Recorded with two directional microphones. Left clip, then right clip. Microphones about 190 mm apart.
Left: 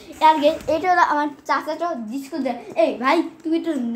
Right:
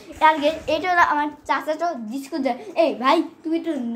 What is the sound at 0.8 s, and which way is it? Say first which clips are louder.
A child's voice: right 1 dB; 5° right (ahead or behind).